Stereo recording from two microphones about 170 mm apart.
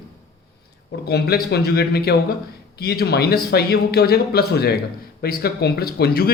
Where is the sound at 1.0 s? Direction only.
70° left (ahead or behind).